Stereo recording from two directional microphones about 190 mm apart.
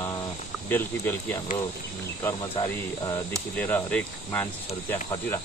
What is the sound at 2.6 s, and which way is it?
Speech, 15° left (ahead or behind).